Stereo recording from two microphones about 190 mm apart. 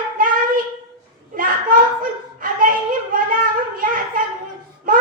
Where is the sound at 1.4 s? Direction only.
45° right (ahead or behind).